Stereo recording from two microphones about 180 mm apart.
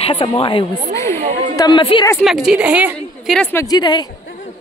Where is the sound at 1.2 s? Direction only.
50° right (ahead or behind).